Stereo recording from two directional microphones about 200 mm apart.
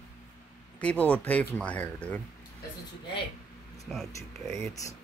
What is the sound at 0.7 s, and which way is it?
Speech, 5° left (ahead or behind).